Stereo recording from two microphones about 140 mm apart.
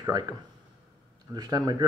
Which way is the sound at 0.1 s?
30° right (ahead or behind).